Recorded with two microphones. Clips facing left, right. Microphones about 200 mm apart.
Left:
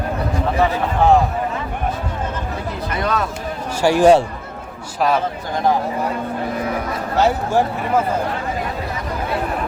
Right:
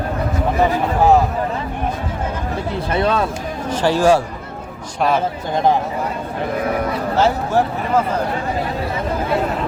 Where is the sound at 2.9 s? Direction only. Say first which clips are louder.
Right 4 dB; 30° right (ahead or behind).